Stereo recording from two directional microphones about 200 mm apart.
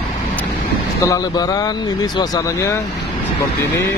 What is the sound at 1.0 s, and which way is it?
Speech, 15° left (ahead or behind).